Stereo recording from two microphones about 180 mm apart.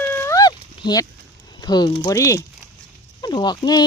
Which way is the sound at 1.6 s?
20° left (ahead or behind).